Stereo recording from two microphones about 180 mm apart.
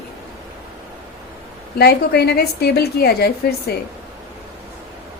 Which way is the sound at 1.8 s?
60° left (ahead or behind).